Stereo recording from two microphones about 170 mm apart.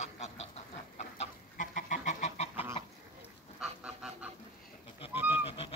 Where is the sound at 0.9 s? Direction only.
45° left (ahead or behind).